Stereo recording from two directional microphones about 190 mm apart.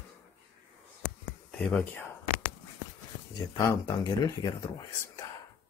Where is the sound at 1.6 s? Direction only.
5° left (ahead or behind).